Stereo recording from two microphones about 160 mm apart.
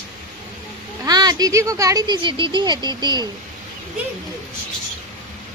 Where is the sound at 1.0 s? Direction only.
25° right (ahead or behind).